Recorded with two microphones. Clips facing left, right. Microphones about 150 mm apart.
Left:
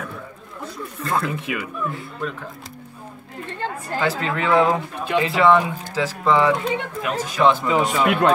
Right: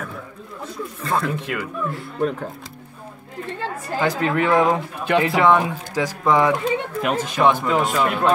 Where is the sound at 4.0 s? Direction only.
15° right (ahead or behind).